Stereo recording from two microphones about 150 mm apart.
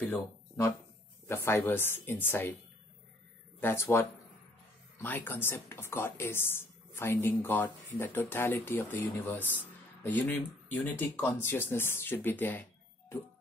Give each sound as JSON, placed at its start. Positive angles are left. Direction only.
{"t": 0.1, "sound": "speech", "side_deg": 15}
{"t": 3.6, "sound": "speech", "side_deg": 15}